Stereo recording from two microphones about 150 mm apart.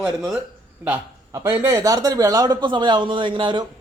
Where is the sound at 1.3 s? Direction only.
20° right (ahead or behind).